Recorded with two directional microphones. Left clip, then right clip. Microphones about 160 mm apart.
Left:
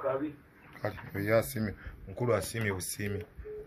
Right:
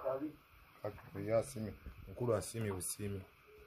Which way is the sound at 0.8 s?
15° right (ahead or behind).